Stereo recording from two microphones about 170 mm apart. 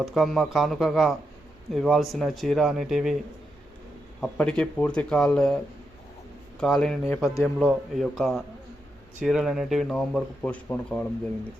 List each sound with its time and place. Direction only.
0.0 s speech: centre (ahead or behind)
4.2 s speech: 5° left (ahead or behind)
6.6 s speech: 5° left (ahead or behind)